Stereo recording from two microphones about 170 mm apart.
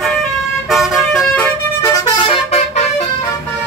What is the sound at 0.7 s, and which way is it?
Vehicle, centre (ahead or behind).